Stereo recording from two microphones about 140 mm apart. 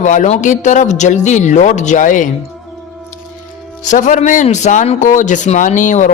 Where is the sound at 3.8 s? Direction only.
65° left (ahead or behind).